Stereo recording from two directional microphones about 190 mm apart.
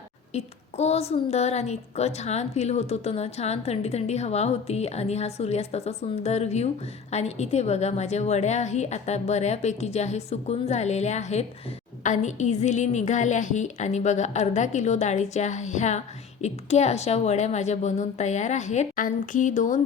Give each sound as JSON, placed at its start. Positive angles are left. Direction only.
{"t": 0.3, "sound": "a woman's voice", "side_deg": 35}